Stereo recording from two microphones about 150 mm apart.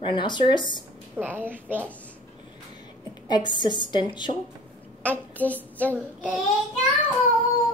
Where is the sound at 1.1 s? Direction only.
15° right (ahead or behind).